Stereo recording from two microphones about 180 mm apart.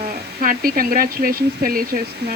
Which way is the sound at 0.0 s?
55° right (ahead or behind).